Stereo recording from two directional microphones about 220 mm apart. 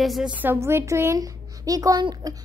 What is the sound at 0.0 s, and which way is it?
A woman's voice, centre (ahead or behind).